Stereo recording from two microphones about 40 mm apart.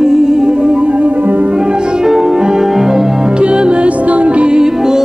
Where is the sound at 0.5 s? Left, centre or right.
Right.